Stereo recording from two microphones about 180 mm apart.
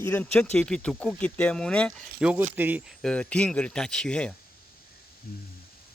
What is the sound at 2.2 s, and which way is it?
Speech, 10° right (ahead or behind).